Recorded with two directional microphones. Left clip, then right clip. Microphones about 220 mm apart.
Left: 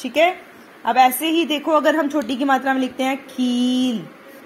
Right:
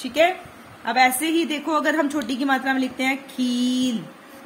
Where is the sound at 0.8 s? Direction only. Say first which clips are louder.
Left 3 dB; 15° left (ahead or behind).